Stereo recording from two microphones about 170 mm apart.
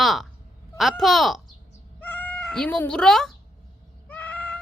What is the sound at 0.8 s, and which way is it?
Speech, centre (ahead or behind).